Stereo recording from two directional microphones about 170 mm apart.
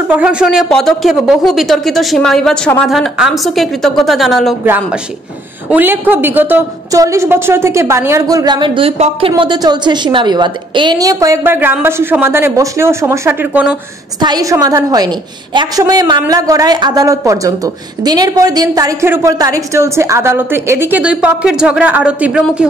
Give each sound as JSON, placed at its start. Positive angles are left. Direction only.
{"t": 0.1, "sound": "speech", "side_deg": -5}
{"t": 4.6, "sound": "a woman's voice", "side_deg": -10}
{"t": 9.3, "sound": "a woman's voice", "side_deg": -25}
{"t": 14.2, "sound": "a woman's voice", "side_deg": -20}